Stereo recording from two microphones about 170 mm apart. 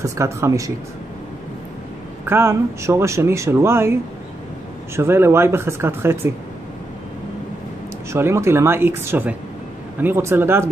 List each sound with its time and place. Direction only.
0.0 s speech: 15° right (ahead or behind)
2.2 s speech: 15° right (ahead or behind)
8.1 s speech: 15° right (ahead or behind)